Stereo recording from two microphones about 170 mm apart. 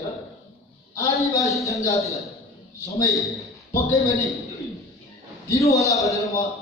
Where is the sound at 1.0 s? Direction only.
20° left (ahead or behind).